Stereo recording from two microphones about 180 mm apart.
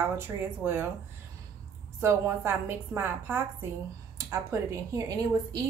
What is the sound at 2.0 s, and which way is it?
A woman's voice, 15° right (ahead or behind).